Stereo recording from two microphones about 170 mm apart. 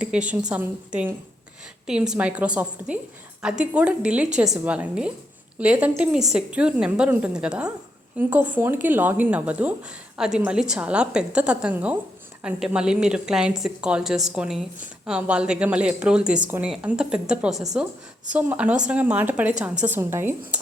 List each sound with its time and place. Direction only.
0.0 s a woman's voice: 5° right (ahead or behind)